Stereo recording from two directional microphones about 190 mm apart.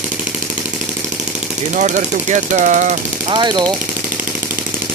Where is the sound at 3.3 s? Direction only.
25° right (ahead or behind).